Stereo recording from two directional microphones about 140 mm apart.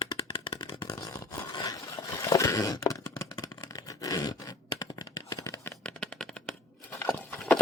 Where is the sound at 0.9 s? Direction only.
25° left (ahead or behind).